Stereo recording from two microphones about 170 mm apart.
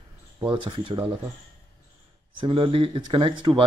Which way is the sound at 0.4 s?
25° right (ahead or behind).